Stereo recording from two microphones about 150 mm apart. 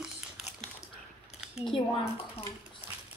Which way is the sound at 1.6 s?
35° left (ahead or behind).